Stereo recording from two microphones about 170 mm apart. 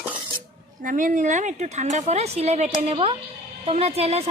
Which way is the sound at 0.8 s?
50° right (ahead or behind).